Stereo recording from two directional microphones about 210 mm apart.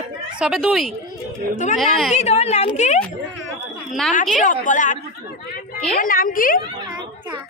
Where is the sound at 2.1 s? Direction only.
30° left (ahead or behind).